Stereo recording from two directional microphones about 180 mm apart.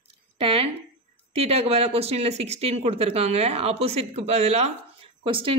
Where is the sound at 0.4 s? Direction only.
30° right (ahead or behind).